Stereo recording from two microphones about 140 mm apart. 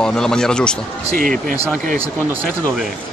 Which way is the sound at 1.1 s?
80° right.